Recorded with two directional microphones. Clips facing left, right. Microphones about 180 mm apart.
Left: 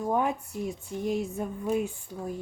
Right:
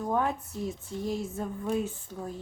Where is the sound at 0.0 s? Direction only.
15° left (ahead or behind).